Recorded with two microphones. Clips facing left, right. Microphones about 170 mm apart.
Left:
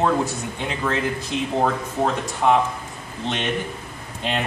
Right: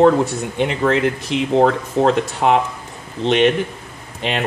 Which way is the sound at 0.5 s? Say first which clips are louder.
Right 9 dB; 75° right (ahead or behind).